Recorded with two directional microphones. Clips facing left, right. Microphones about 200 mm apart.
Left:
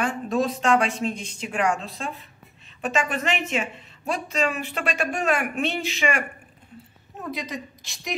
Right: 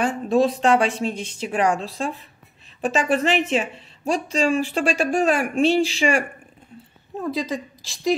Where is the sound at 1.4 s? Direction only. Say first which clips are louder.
Right 4 dB; 35° right (ahead or behind).